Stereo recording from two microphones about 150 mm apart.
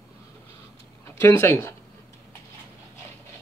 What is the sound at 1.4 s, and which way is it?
Speech, 15° left (ahead or behind).